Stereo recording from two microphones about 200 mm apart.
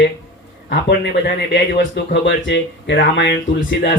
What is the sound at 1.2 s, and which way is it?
Speech, 60° left (ahead or behind).